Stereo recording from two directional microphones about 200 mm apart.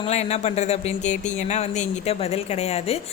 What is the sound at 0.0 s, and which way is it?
Speech, 35° left (ahead or behind).